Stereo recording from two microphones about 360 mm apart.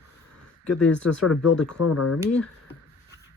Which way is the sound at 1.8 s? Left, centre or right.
Left.